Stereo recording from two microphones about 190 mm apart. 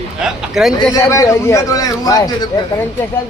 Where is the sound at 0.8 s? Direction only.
15° left (ahead or behind).